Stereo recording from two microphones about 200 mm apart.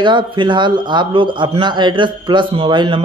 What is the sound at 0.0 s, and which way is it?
A man's voice, 25° right (ahead or behind).